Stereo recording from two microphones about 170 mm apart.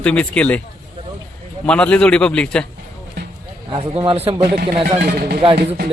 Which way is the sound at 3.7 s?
30° right (ahead or behind).